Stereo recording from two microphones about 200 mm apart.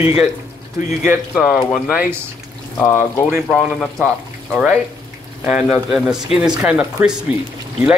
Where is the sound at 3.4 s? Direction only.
5° left (ahead or behind).